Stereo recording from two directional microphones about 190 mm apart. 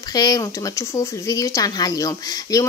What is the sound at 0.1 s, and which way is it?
A woman's voice, 20° left (ahead or behind).